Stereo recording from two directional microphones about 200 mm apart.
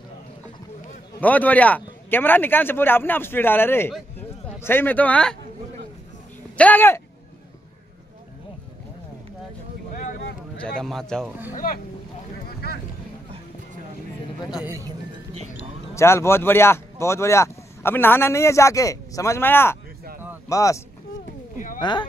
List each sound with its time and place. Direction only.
1.2 s speech: 10° left (ahead or behind)
6.5 s speech: 10° left (ahead or behind)
10.6 s a man's voice: 5° left (ahead or behind)
11.5 s speech: 45° left (ahead or behind)
15.9 s speech: 15° left (ahead or behind)